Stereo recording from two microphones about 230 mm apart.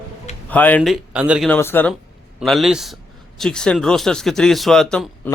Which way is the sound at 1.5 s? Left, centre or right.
Centre.